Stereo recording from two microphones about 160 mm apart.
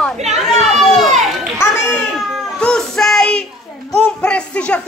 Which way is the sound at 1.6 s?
15° left (ahead or behind).